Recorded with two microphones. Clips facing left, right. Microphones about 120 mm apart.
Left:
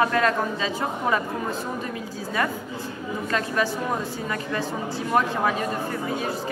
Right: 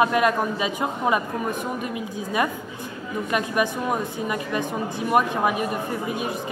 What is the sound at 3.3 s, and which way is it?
Speech, 15° right (ahead or behind).